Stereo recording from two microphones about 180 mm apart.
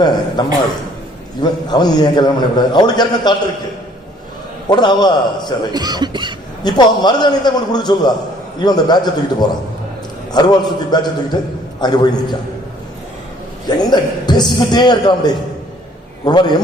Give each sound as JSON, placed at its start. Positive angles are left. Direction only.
{"t": 0.4, "sound": "a man's voice", "side_deg": 25}
{"t": 4.7, "sound": "a man's voice", "side_deg": 25}
{"t": 5.7, "sound": "speech", "side_deg": -20}
{"t": 6.6, "sound": "a man's voice", "side_deg": 25}
{"t": 13.7, "sound": "a man's voice", "side_deg": 20}